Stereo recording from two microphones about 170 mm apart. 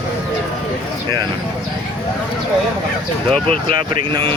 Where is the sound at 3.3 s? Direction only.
5° left (ahead or behind).